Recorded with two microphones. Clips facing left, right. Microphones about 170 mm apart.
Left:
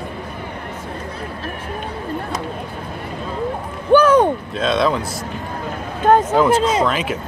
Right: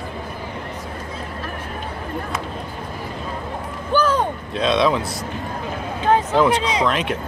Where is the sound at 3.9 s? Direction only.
65° left (ahead or behind).